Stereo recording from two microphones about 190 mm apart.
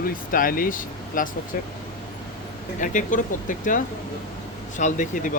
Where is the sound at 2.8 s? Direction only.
45° left (ahead or behind).